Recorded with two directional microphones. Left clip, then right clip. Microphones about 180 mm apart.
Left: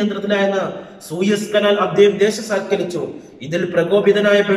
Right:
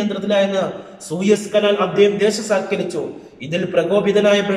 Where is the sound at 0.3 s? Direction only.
15° right (ahead or behind).